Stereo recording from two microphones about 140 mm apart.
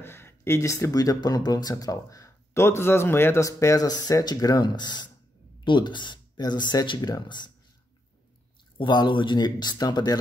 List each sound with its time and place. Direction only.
0.0 s speech: 15° left (ahead or behind)
8.7 s speech: 35° left (ahead or behind)